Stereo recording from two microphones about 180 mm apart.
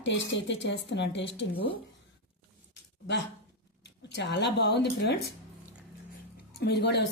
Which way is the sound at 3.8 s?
70° left (ahead or behind).